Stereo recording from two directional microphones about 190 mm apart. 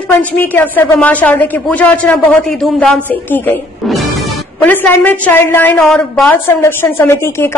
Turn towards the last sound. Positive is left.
turn(degrees=15)  # may be behind; listen again after turning